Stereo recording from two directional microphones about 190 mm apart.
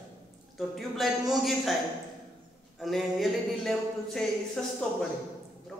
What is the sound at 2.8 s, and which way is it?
Speech, centre (ahead or behind).